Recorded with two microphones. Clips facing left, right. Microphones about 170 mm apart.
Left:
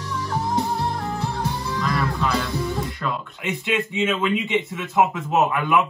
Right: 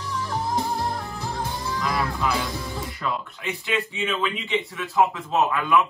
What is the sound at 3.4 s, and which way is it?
A man's voice, 20° left (ahead or behind).